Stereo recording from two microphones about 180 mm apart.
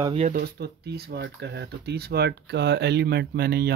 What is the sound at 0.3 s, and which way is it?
Speech, 60° right (ahead or behind).